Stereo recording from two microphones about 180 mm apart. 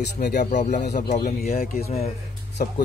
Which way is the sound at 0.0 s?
65° left (ahead or behind).